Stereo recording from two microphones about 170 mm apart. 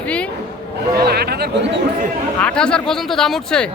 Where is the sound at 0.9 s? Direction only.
70° right (ahead or behind).